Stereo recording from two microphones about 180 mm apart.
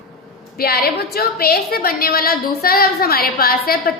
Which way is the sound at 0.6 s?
55° left (ahead or behind).